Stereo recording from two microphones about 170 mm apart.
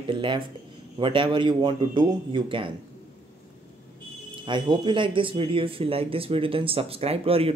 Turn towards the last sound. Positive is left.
turn(degrees=-35)  # may be behind; listen again after turning